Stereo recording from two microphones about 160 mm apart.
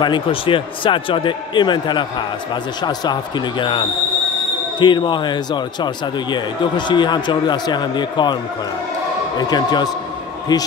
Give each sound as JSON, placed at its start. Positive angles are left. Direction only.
{"t": 0.0, "sound": "a man's voice", "side_deg": 30}
{"t": 9.4, "sound": "a man's voice", "side_deg": 25}